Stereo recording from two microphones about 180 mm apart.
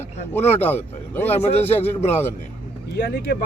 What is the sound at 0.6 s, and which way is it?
Speech, 10° left (ahead or behind).